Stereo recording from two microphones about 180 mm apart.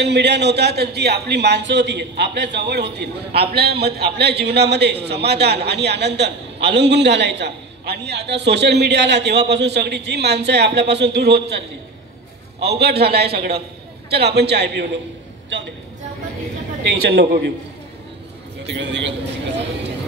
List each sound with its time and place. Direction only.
0.0 s a man's voice: 70° right (ahead or behind)
12.5 s a man's voice: 65° right (ahead or behind)
17.1 s a man's voice: 65° right (ahead or behind)
18.7 s a man's voice: 75° right (ahead or behind)